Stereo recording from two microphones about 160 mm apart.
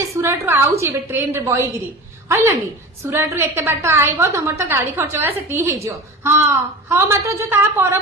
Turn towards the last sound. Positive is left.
turn(degrees=-15)  # may be behind; listen again after turning